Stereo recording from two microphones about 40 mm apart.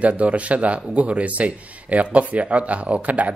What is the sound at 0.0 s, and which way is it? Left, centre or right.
Speech, right.